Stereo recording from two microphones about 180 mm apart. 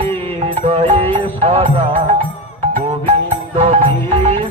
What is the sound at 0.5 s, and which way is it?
Music, 35° right (ahead or behind).